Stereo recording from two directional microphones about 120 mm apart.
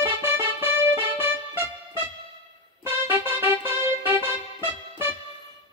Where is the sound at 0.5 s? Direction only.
50° left (ahead or behind).